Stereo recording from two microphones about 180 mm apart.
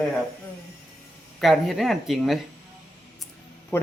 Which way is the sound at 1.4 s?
Centre (ahead or behind).